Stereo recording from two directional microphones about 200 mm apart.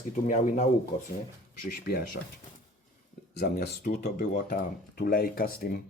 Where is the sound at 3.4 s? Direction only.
45° left (ahead or behind).